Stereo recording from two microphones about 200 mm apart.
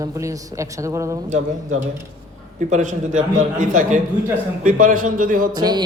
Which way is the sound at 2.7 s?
40° right (ahead or behind).